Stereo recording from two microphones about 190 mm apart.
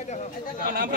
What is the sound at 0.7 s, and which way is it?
Speech, 50° right (ahead or behind).